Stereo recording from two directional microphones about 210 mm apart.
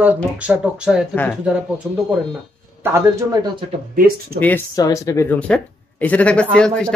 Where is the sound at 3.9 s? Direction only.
45° right (ahead or behind).